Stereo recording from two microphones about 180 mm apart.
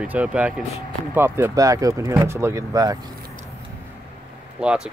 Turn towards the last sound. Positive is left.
turn(degrees=-5)  # may be behind; listen again after turning